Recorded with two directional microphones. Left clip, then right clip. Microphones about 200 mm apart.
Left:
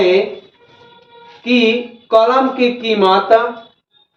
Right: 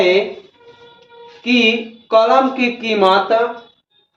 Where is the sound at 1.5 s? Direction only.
20° right (ahead or behind).